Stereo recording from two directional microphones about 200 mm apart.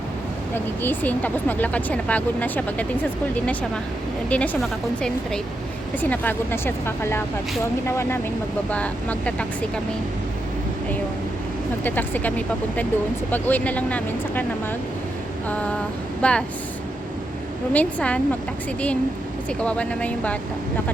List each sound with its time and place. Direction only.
0.5 s speech: 10° left (ahead or behind)
6.0 s speech: 10° left (ahead or behind)
11.8 s speech: 10° left (ahead or behind)
15.4 s speech: 5° left (ahead or behind)
17.7 s speech: 5° left (ahead or behind)
19.5 s speech: 5° left (ahead or behind)